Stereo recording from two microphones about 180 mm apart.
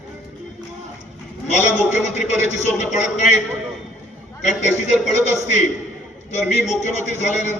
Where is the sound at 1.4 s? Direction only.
40° left (ahead or behind).